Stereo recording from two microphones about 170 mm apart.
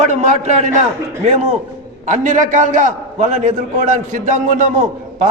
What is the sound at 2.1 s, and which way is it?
A man's voice, 45° right (ahead or behind).